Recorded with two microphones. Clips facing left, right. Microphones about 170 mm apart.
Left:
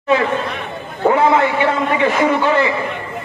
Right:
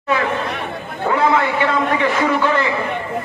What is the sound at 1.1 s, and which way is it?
A man's voice, 20° left (ahead or behind).